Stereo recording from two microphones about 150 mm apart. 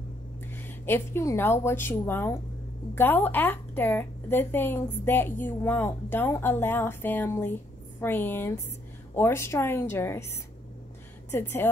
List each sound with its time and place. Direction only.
0.5 s a woman's voice: 15° left (ahead or behind)